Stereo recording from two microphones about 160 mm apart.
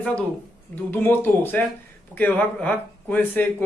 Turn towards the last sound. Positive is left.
turn(degrees=10)  # may be behind; listen again after turning